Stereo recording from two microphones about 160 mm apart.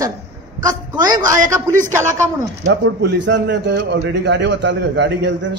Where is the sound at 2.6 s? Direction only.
90° right.